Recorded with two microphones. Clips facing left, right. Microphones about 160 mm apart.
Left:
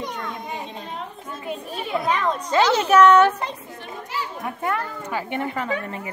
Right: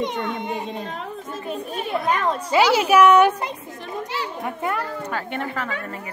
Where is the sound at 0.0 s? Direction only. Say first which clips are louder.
Right 5 dB; 25° right (ahead or behind).